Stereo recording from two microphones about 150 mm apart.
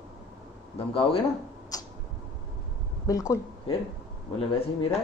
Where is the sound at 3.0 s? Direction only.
20° left (ahead or behind).